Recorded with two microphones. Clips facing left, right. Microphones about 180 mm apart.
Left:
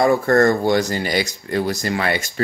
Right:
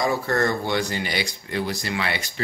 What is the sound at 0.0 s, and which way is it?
Speech, 50° left (ahead or behind).